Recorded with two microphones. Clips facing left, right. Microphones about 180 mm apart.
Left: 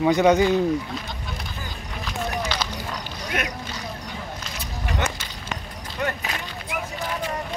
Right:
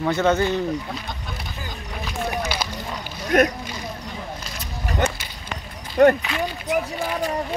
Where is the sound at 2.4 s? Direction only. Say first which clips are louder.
Right 1 dB; 5° right (ahead or behind).